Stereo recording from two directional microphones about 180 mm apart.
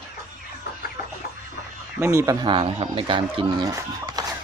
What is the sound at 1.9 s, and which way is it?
Speech, 15° right (ahead or behind).